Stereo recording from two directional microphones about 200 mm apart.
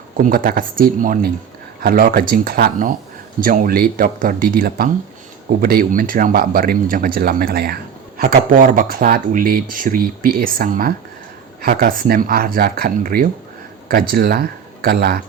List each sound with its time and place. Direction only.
0.2 s speech: 45° right (ahead or behind)